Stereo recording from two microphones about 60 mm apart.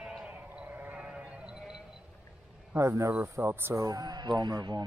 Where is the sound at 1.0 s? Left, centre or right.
Centre.